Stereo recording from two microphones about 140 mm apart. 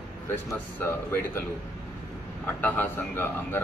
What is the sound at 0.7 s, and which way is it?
Speech, 15° left (ahead or behind).